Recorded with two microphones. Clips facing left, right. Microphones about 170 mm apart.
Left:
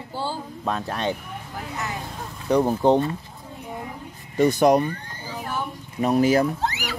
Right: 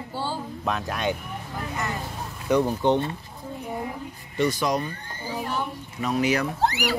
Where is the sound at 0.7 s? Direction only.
30° left (ahead or behind).